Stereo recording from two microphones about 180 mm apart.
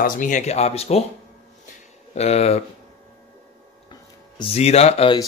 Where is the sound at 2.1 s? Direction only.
35° left (ahead or behind).